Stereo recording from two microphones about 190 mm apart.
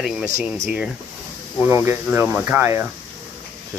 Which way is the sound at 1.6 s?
10° right (ahead or behind).